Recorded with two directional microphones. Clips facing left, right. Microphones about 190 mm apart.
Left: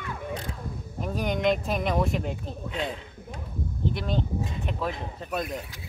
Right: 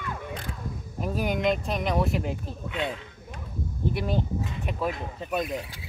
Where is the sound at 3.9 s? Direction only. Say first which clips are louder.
Right 3 dB; 10° right (ahead or behind).